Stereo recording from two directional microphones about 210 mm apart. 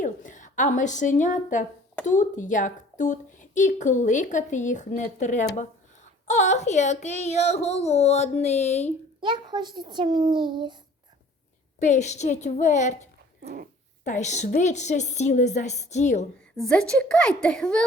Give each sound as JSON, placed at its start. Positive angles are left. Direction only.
{"t": 0.0, "sound": "a woman's voice", "side_deg": 35}
{"t": 9.2, "sound": "a child's voice", "side_deg": -20}
{"t": 11.8, "sound": "speech", "side_deg": 35}
{"t": 14.0, "sound": "speech", "side_deg": 35}
{"t": 16.6, "sound": "a child's voice", "side_deg": 5}